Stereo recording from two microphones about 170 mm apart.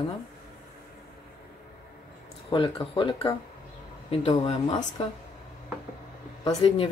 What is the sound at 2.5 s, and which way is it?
Speech, 30° left (ahead or behind).